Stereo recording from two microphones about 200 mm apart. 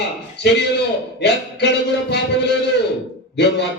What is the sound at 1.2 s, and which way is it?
A man's voice, 60° left (ahead or behind).